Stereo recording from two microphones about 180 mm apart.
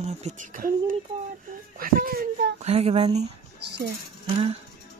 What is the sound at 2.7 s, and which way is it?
Speech, 35° right (ahead or behind).